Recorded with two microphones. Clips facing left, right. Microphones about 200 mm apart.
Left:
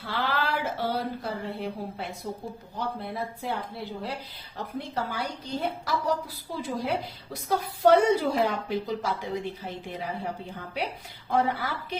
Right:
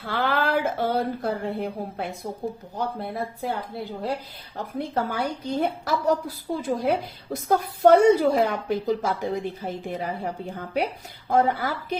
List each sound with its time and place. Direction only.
0.0 s a woman's voice: 55° right (ahead or behind)